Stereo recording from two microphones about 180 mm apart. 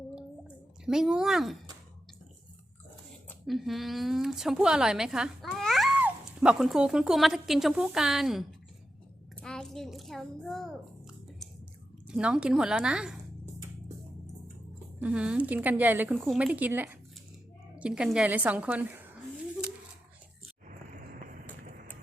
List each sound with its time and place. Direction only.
0.9 s a woman's voice: 5° right (ahead or behind)
3.2 s a woman's voice: centre (ahead or behind)
9.3 s a sound: 5° left (ahead or behind)
12.0 s a woman's voice: 5° right (ahead or behind)
15.0 s a woman's voice: 5° right (ahead or behind)
20.7 s vehicle: 45° right (ahead or behind)
21.6 s a sound: 55° right (ahead or behind)